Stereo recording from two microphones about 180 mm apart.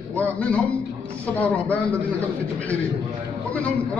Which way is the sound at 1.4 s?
10° left (ahead or behind).